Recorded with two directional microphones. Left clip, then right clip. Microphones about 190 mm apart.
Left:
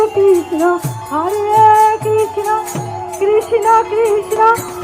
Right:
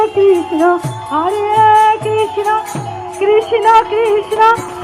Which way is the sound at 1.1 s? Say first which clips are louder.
Even; 65° left (ahead or behind).